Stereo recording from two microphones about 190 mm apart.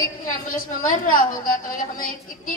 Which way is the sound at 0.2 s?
45° left (ahead or behind).